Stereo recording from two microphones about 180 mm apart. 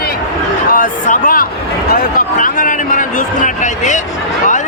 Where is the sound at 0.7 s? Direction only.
50° left (ahead or behind).